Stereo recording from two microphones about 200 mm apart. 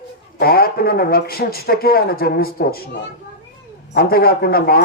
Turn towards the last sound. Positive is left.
turn(degrees=50)  # may be behind; listen again after turning